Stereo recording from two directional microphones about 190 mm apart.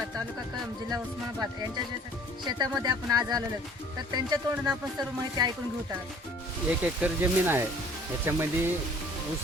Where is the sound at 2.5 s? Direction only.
20° right (ahead or behind).